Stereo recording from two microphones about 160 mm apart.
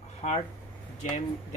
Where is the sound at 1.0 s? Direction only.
50° left (ahead or behind).